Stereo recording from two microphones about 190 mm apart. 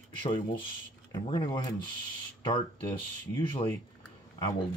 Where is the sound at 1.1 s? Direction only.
25° left (ahead or behind).